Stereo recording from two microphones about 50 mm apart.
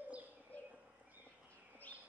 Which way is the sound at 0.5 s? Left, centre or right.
Left.